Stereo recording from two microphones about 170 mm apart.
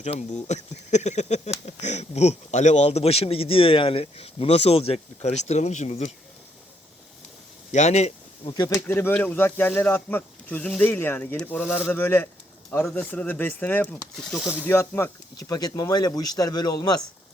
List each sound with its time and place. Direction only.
0.0 s speech: 45° left (ahead or behind)
7.7 s speech: 40° left (ahead or behind)
8.5 s speech: 20° left (ahead or behind); by 14.7 s 5° right (ahead or behind)
14.7 s speech: 15° left (ahead or behind)